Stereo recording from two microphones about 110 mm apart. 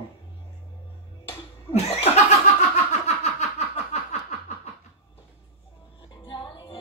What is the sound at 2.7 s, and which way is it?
Snicker, 85° left.